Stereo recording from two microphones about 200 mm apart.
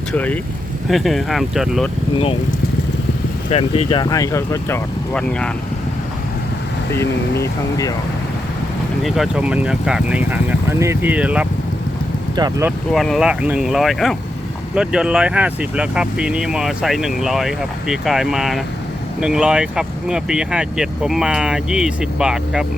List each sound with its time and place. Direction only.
0.1 s speech: 5° left (ahead or behind)
3.5 s speech: 30° left (ahead or behind); by 5.5 s 10° left (ahead or behind)
6.9 s speech: 15° left (ahead or behind)
9.0 s speech: centre (ahead or behind)
12.9 s speech: centre (ahead or behind)